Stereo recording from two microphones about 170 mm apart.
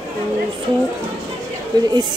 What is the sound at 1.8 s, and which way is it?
Speech, 25° right (ahead or behind).